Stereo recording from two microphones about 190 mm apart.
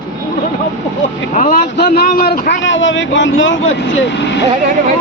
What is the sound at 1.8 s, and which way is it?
A man's voice, 50° left (ahead or behind).